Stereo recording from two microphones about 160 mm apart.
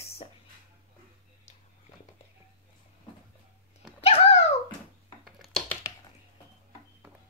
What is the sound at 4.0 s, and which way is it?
Dog, 40° left (ahead or behind).